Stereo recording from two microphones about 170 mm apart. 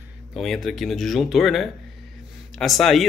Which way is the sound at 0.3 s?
Centre (ahead or behind).